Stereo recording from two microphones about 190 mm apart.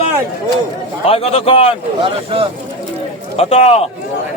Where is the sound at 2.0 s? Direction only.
30° right (ahead or behind).